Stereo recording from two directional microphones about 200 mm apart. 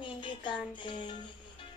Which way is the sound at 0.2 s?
25° left (ahead or behind).